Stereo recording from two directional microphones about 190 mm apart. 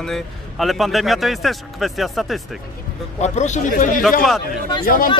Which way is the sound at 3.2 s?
40° left (ahead or behind).